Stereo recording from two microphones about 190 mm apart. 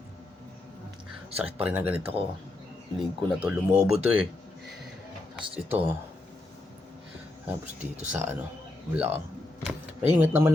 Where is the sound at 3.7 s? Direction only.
35° right (ahead or behind).